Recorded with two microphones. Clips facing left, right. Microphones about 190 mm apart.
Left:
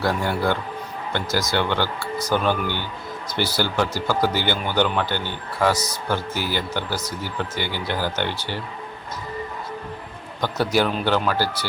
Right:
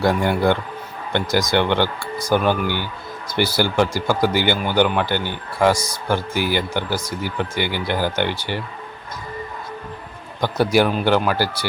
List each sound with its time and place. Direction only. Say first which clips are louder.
0.0 s speech: right 4 dB; 15° right (ahead or behind)
10.4 s speech: right 4 dB; 10° right (ahead or behind)